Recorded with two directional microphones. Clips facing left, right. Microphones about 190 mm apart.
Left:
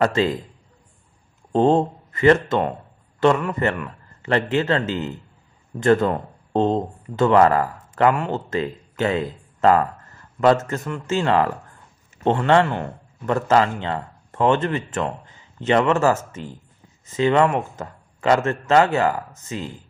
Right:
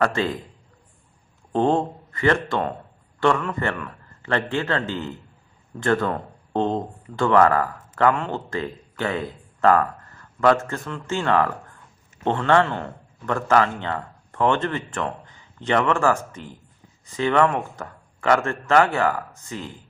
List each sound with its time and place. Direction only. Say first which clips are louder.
0.0 s a man's voice: left 3 dB; 20° left (ahead or behind)
1.5 s a man's voice: left 3 dB; 20° left (ahead or behind)